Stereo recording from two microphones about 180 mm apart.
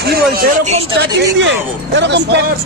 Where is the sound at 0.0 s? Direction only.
60° right (ahead or behind).